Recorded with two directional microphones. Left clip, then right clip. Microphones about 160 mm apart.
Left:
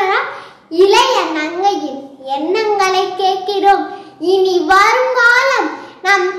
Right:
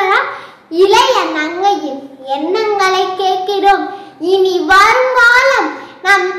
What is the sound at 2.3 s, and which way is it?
Child singing, 10° left (ahead or behind).